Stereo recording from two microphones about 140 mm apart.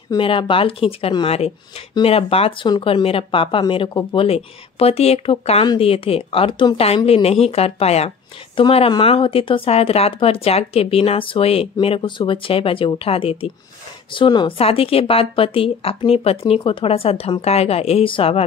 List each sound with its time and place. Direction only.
0.2 s speech: 40° left (ahead or behind)
14.6 s speech: 45° left (ahead or behind)